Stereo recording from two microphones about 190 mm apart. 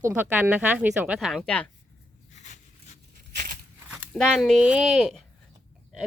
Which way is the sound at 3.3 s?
50° right (ahead or behind).